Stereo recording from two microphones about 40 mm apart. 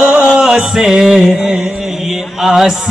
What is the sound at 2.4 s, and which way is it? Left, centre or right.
Speech, centre.